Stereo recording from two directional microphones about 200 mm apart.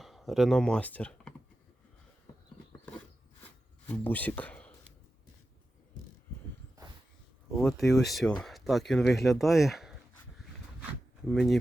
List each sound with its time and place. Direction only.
0.0 s speech: centre (ahead or behind)
4.0 s speech: 10° left (ahead or behind)
7.5 s speech: centre (ahead or behind)